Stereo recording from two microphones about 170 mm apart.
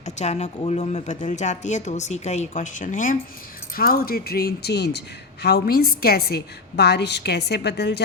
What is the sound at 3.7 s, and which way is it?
A woman's voice, 60° left (ahead or behind).